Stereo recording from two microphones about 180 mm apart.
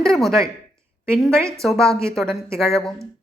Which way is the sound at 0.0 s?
Centre (ahead or behind).